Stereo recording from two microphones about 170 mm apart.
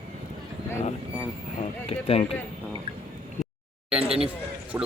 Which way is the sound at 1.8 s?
35° left (ahead or behind).